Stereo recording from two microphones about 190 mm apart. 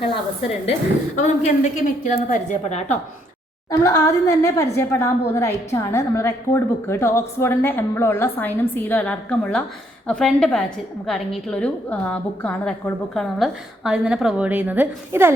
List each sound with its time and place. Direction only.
0.6 s a woman's voice: 35° left (ahead or behind)
3.7 s a woman's voice: 15° left (ahead or behind); by 15.3 s 10° right (ahead or behind)